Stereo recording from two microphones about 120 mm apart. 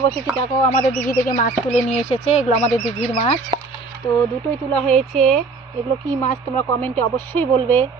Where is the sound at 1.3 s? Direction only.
90° left.